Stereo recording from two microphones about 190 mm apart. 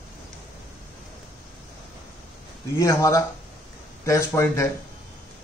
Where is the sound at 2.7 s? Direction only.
15° left (ahead or behind).